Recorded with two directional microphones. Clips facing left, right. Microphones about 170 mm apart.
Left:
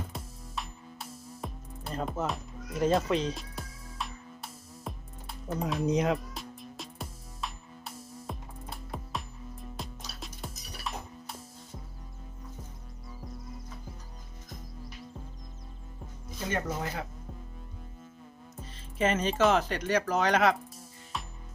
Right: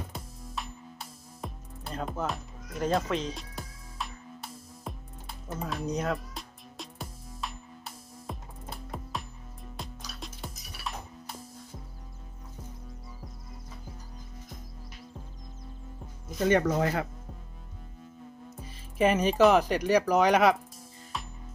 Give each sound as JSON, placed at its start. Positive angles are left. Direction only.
{"t": 0.1, "sound": "music", "side_deg": 0}
{"t": 5.5, "sound": "speech", "side_deg": 0}
{"t": 5.9, "sound": "speech", "side_deg": 20}
{"t": 6.3, "sound": "music", "side_deg": 0}
{"t": 16.5, "sound": "speech", "side_deg": -75}
{"t": 18.6, "sound": "music", "side_deg": -15}
{"t": 19.5, "sound": "speech", "side_deg": -10}
{"t": 21.1, "sound": "music", "side_deg": 0}